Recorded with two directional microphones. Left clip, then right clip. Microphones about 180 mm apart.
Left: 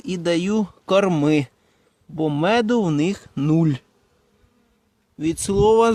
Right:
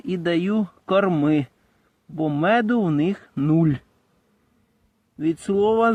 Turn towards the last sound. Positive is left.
turn(degrees=25)  # may be behind; listen again after turning